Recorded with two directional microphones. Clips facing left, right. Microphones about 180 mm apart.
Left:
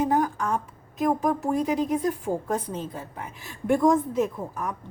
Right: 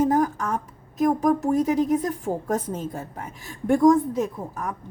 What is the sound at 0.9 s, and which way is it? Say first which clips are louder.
A woman's voice: right 3 dB; 40° right (ahead or behind).